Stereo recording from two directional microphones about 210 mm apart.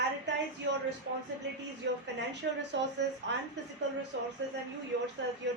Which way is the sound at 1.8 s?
55° right (ahead or behind).